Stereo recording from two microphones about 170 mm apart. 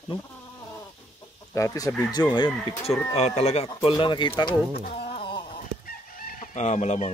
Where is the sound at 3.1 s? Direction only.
40° left (ahead or behind).